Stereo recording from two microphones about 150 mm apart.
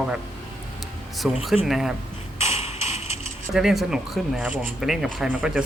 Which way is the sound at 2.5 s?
45° left (ahead or behind).